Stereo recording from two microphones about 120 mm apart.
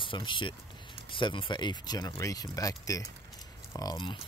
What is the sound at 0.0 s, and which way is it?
Speech, 45° left (ahead or behind).